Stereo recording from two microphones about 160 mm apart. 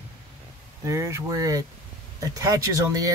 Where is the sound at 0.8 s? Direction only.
20° right (ahead or behind).